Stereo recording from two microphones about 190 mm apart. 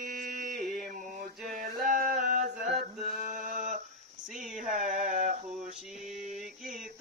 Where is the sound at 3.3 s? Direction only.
40° right (ahead or behind).